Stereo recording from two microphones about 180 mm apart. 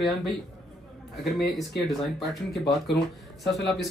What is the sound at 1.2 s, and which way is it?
Speech, centre (ahead or behind).